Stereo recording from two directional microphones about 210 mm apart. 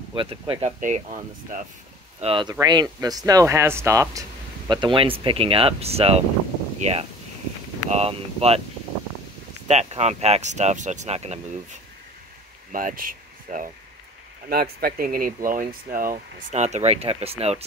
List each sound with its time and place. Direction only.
0.1 s speech: 25° right (ahead or behind)
2.1 s speech: 25° right (ahead or behind)
9.7 s speech: 30° right (ahead or behind)
12.7 s speech: 40° right (ahead or behind)